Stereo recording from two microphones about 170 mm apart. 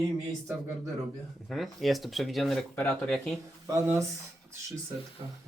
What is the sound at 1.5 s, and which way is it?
Speech, centre (ahead or behind).